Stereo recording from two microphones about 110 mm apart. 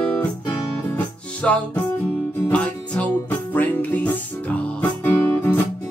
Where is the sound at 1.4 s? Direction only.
10° left (ahead or behind).